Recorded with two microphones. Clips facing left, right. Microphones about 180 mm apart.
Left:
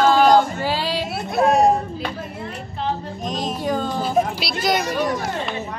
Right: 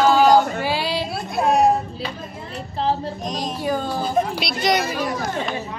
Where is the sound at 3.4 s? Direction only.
5° right (ahead or behind).